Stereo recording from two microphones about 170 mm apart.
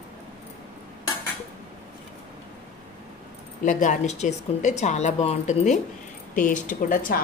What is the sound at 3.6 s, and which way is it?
Speech, 50° left (ahead or behind).